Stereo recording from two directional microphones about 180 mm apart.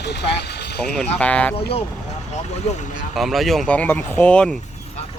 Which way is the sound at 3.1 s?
Centre (ahead or behind).